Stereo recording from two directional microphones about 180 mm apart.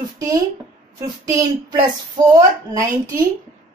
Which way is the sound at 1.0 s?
25° right (ahead or behind).